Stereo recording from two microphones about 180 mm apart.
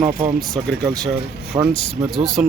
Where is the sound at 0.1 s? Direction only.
50° right (ahead or behind).